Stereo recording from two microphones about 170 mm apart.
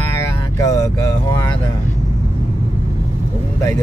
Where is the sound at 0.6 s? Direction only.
20° left (ahead or behind).